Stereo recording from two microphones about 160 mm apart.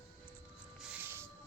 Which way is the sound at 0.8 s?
15° right (ahead or behind).